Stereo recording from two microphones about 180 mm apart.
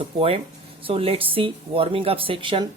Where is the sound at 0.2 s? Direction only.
30° right (ahead or behind).